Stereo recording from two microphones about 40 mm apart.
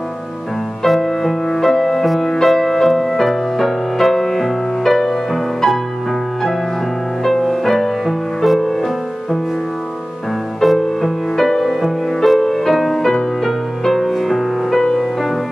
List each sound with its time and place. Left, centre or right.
0.8 s music: centre
7.2 s music: centre
10.6 s music: centre